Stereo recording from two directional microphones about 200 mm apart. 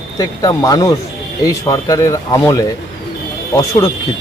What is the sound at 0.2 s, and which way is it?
Speech, 20° left (ahead or behind).